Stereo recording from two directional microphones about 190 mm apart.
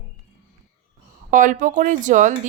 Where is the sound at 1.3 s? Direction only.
45° right (ahead or behind).